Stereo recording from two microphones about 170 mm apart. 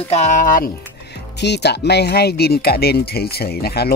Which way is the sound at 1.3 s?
80° left.